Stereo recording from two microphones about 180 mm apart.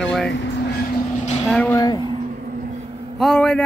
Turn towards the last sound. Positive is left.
turn(degrees=5)  # may be behind; listen again after turning